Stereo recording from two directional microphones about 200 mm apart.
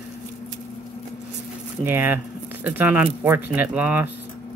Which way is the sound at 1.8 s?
10° right (ahead or behind).